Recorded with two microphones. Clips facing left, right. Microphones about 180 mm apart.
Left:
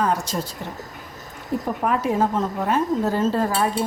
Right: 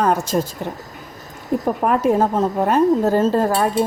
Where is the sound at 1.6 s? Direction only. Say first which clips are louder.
Right 5 dB; 45° right (ahead or behind).